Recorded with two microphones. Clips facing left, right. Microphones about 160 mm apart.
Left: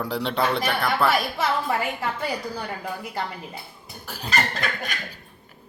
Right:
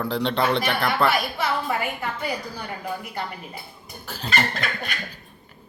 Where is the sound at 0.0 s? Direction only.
5° left (ahead or behind).